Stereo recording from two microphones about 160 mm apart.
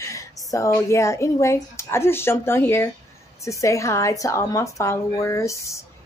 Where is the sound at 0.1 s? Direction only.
20° left (ahead or behind).